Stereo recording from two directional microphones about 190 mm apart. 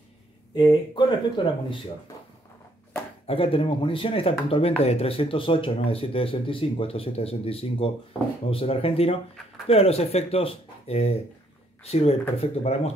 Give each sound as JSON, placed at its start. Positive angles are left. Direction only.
{"t": 0.6, "sound": "speech", "side_deg": 20}
{"t": 3.3, "sound": "speech", "side_deg": 30}